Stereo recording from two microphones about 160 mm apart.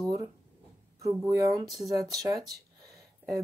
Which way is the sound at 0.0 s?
30° right (ahead or behind).